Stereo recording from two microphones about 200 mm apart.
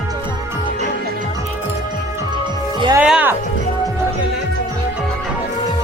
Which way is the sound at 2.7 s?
25° right (ahead or behind).